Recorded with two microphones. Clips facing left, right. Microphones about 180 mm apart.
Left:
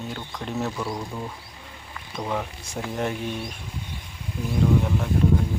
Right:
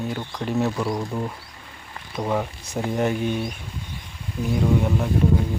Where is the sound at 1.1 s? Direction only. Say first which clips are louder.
Right 5 dB; 15° right (ahead or behind).